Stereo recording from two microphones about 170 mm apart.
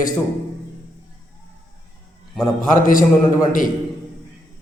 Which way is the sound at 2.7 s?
50° left (ahead or behind).